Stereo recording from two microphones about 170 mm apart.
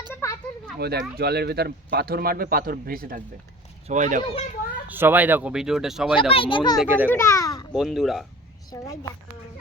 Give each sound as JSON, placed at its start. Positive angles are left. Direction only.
{"t": 0.1, "sound": "a sound", "side_deg": 15}
{"t": 0.8, "sound": "speech", "side_deg": -65}
{"t": 3.8, "sound": "speech", "side_deg": -45}
{"t": 4.9, "sound": "speech", "side_deg": -10}
{"t": 6.1, "sound": "a child's voice", "side_deg": 30}
{"t": 6.8, "sound": "speech", "side_deg": -10}
{"t": 7.1, "sound": "a child's voice", "side_deg": 15}
{"t": 7.7, "sound": "speech", "side_deg": 0}
{"t": 8.7, "sound": "a woman's voice", "side_deg": 20}